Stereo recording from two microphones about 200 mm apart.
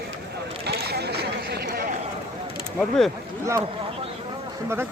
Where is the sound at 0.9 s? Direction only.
55° right (ahead or behind).